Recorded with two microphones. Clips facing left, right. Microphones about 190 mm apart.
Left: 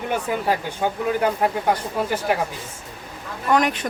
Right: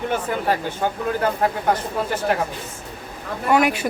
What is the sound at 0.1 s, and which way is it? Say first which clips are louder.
Speech: left 2 dB; 10° left (ahead or behind).